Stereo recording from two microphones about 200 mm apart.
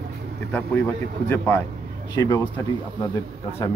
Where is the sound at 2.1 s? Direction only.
20° left (ahead or behind).